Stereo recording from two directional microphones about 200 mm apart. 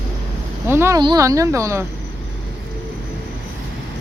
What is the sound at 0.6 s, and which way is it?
Speech, 10° right (ahead or behind).